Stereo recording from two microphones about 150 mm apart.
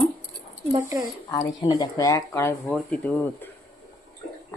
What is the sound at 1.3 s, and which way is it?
Speech, 25° left (ahead or behind).